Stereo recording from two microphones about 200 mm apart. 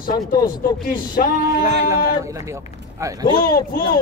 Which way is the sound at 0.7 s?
20° left (ahead or behind).